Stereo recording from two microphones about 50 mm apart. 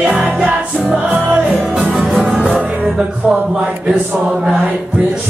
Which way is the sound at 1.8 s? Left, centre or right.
Centre.